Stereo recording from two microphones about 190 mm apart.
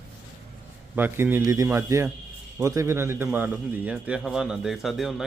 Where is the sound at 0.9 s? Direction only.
10° right (ahead or behind).